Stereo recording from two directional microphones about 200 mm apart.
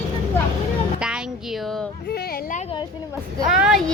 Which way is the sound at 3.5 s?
Centre (ahead or behind).